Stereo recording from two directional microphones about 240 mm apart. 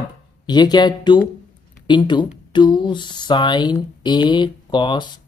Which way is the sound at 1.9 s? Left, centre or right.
Centre.